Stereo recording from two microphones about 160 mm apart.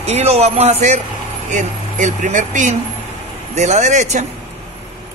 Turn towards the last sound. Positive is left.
turn(degrees=-50)  # may be behind; listen again after turning